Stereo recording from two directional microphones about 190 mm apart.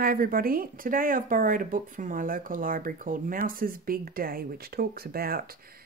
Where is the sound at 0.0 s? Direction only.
50° right (ahead or behind).